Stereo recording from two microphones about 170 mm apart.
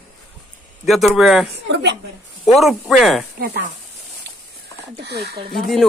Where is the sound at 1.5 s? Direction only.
85° right.